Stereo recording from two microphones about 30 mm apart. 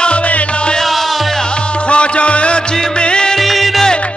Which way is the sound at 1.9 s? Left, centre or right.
Left.